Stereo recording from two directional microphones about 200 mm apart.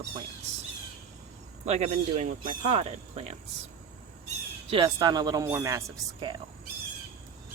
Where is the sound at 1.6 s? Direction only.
35° right (ahead or behind).